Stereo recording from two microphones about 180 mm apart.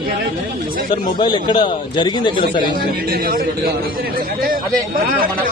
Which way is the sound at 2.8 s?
55° right (ahead or behind).